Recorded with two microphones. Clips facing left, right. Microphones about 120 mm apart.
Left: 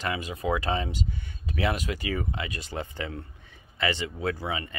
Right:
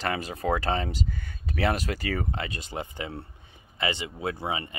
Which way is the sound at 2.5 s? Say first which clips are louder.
Even; 20° right (ahead or behind).